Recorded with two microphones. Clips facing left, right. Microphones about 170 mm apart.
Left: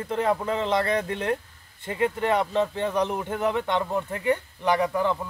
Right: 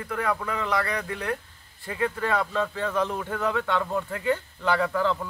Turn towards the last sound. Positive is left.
turn(degrees=15)  # may be behind; listen again after turning